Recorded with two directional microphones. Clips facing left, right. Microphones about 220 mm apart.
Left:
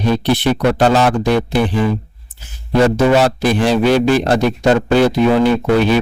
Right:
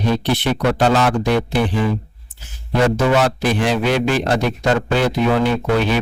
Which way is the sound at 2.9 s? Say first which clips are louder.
Left 4 dB; 35° left (ahead or behind).